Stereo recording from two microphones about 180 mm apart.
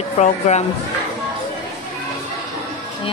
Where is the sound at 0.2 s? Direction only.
40° left (ahead or behind).